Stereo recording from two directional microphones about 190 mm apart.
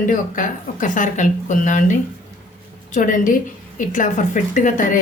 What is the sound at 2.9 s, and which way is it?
A woman's voice, 45° left (ahead or behind).